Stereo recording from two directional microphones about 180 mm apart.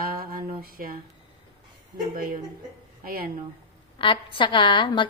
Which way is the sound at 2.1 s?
50° right (ahead or behind).